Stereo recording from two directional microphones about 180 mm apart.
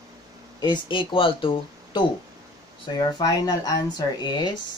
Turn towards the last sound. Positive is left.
turn(degrees=25)  # may be behind; listen again after turning